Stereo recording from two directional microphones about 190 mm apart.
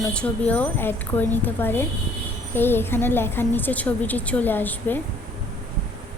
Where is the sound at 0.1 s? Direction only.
5° left (ahead or behind).